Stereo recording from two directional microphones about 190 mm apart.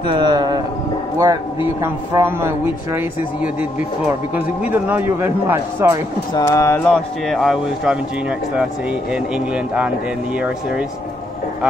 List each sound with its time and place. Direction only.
0.0 s a man's voice: 25° right (ahead or behind)
4.6 s a man's voice: 10° right (ahead or behind)
6.3 s speech: 15° left (ahead or behind); by 8.0 s centre (ahead or behind)
9.1 s speech: 5° right (ahead or behind)